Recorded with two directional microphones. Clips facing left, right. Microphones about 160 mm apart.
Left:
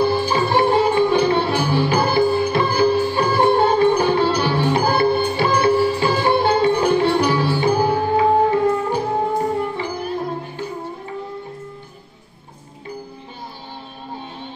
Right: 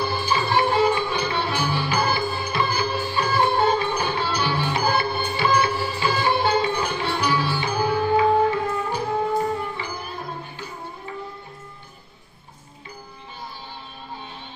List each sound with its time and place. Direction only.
0.0 s music: 50° left (ahead or behind)